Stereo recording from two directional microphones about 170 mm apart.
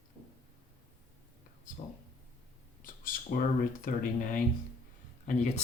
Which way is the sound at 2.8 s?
55° left (ahead or behind).